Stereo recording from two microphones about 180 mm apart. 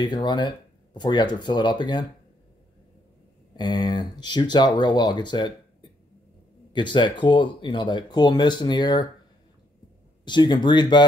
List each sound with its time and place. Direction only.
0.0 s speech: 25° left (ahead or behind)
3.5 s speech: 25° left (ahead or behind)
10.2 s speech: 25° left (ahead or behind)